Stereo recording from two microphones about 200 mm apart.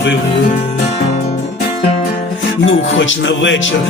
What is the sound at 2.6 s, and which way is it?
Music, 70° left (ahead or behind).